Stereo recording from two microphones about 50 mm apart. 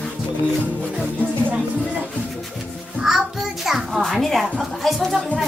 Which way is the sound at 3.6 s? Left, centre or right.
Centre.